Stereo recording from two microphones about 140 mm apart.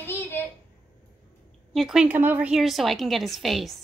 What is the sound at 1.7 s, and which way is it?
A woman's voice, centre (ahead or behind).